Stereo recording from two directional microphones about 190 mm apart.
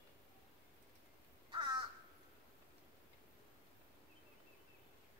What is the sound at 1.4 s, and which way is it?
Crow, 25° right (ahead or behind).